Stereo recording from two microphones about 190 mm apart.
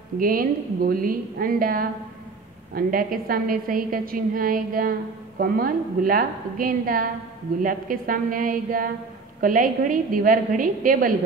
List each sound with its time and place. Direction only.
0.2 s a woman's voice: 50° right (ahead or behind)